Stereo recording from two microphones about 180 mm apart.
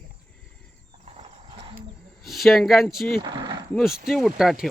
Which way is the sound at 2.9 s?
55° left (ahead or behind).